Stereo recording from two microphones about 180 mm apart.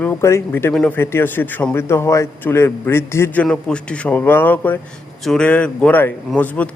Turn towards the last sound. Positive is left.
turn(degrees=10)  # may be behind; listen again after turning